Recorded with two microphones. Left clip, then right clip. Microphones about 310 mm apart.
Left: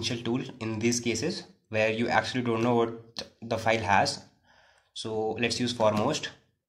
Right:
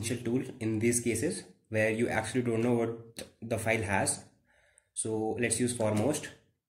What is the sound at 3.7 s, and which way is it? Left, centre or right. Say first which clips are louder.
Speech: left 6 dB; left.